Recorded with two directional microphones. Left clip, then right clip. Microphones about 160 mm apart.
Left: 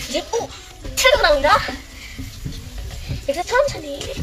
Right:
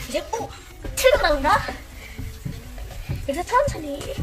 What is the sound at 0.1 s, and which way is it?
Speech, 5° right (ahead or behind).